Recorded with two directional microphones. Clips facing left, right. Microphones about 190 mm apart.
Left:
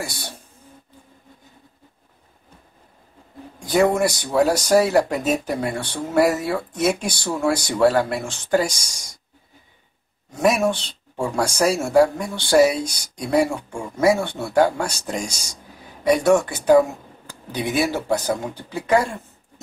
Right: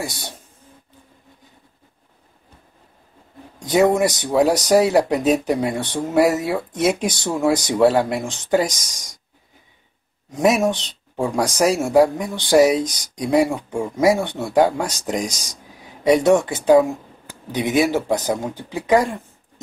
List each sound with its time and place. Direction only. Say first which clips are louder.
0.0 s speech: right 2 dB; 20° right (ahead or behind)
3.5 s speech: right 2 dB; 20° right (ahead or behind)
10.3 s speech: right 2 dB; 20° right (ahead or behind)